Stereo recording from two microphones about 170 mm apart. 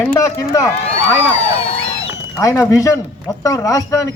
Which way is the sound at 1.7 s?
35° left (ahead or behind).